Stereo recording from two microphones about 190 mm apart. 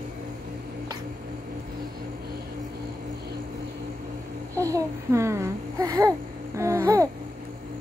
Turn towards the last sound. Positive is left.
turn(degrees=-15)  # may be behind; listen again after turning